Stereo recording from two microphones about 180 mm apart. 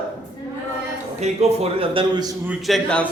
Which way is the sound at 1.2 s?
35° right (ahead or behind).